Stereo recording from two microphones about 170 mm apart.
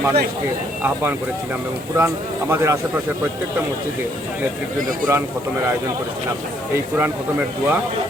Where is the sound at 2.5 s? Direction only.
15° right (ahead or behind).